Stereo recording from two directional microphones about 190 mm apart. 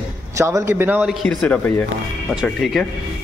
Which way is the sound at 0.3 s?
15° right (ahead or behind).